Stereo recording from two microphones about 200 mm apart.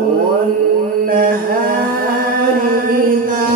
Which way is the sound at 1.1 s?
45° right (ahead or behind).